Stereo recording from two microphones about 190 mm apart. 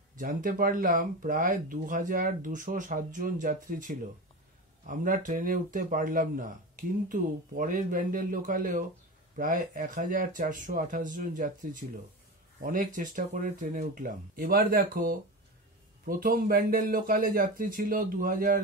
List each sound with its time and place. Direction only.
0.2 s speech: 45° right (ahead or behind)